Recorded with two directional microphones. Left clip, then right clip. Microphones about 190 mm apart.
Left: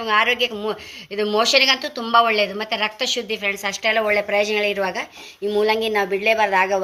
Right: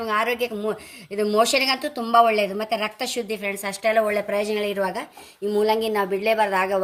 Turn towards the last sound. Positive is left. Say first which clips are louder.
# left 3 dB
turn(degrees=-50)  # may be behind; listen again after turning